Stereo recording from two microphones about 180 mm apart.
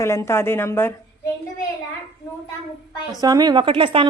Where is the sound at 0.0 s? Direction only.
15° left (ahead or behind).